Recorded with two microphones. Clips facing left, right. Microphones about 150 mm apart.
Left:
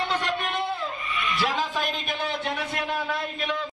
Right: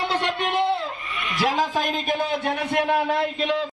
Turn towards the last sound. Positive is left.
turn(degrees=-55)  # may be behind; listen again after turning